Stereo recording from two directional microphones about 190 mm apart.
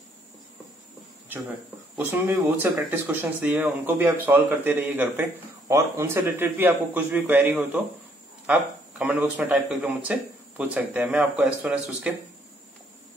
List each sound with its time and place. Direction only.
2.0 s speech: 10° right (ahead or behind)